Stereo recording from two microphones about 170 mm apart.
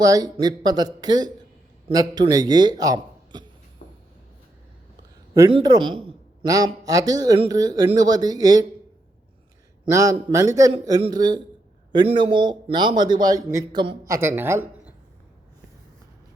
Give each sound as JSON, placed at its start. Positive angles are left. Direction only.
{"t": 0.0, "sound": "a man's voice", "side_deg": -20}
{"t": 5.5, "sound": "a man's voice", "side_deg": -25}
{"t": 9.9, "sound": "a man's voice", "side_deg": -20}